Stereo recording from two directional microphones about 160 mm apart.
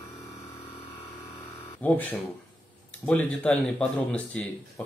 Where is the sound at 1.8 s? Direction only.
10° left (ahead or behind).